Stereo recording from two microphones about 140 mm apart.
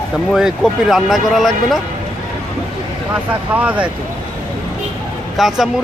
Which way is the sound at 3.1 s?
10° right (ahead or behind).